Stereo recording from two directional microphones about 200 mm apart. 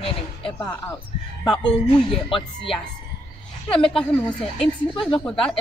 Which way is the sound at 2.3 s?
25° left (ahead or behind).